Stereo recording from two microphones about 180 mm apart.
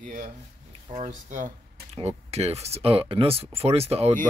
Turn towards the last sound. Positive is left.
turn(degrees=-35)  # may be behind; listen again after turning